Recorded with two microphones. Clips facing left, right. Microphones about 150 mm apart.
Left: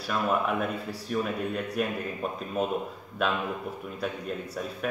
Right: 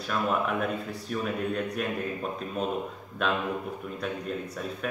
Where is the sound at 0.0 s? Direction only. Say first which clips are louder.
Left 1 dB; centre (ahead or behind).